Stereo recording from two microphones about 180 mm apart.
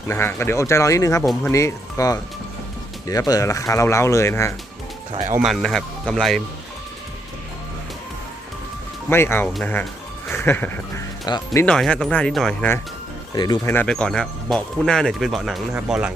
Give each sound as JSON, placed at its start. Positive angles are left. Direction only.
{"t": 0.1, "sound": "speech", "side_deg": 15}
{"t": 5.4, "sound": "speech", "side_deg": 0}
{"t": 9.0, "sound": "speech", "side_deg": 15}
{"t": 11.3, "sound": "speech", "side_deg": 25}
{"t": 11.6, "sound": "speech", "side_deg": 5}
{"t": 13.3, "sound": "speech", "side_deg": 25}
{"t": 13.7, "sound": "speech", "side_deg": 10}